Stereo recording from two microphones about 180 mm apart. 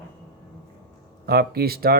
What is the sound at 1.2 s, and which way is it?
Speech, 60° right (ahead or behind).